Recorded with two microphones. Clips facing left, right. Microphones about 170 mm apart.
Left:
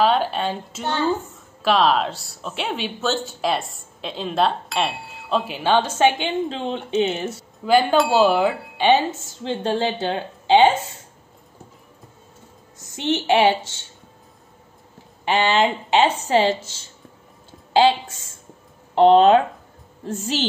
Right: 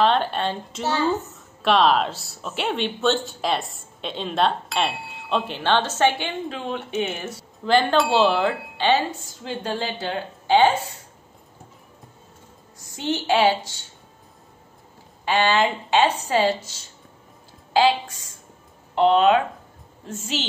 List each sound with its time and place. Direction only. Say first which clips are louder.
0.0 s a child's voice: left 1 dB; 5° left (ahead or behind); by 7.3 s 25° left (ahead or behind)
7.6 s a woman's voice: left 2 dB; 10° left (ahead or behind)
12.7 s a woman's voice: left 3 dB; 20° left (ahead or behind)
15.2 s a woman's voice: left 1 dB; 20° left (ahead or behind)